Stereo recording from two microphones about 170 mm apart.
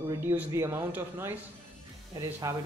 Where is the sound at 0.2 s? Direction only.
15° right (ahead or behind).